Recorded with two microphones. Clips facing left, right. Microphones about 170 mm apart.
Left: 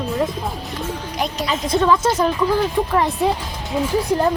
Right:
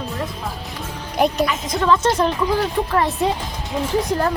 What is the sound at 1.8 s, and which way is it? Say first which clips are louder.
Speech: right 2 dB; 10° left (ahead or behind).